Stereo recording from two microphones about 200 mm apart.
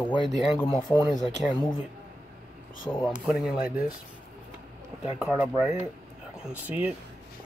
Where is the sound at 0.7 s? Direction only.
20° left (ahead or behind).